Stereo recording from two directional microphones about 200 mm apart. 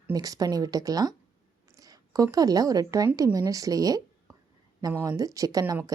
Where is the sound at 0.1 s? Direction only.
20° right (ahead or behind).